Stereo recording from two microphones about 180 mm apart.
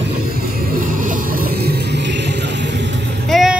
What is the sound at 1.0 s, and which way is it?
Music, 55° right (ahead or behind).